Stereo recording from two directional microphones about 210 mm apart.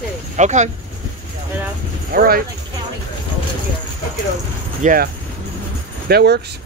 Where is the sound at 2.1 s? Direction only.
45° right (ahead or behind).